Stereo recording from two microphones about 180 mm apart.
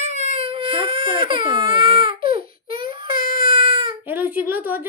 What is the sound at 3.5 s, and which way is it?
Baby cry, 30° right (ahead or behind).